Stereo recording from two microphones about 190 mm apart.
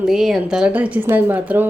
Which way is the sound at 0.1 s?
Centre (ahead or behind).